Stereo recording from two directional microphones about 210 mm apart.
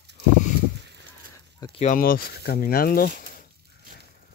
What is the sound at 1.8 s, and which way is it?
Speech, 40° left (ahead or behind).